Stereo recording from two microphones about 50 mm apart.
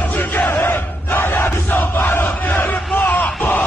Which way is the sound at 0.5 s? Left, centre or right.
Left.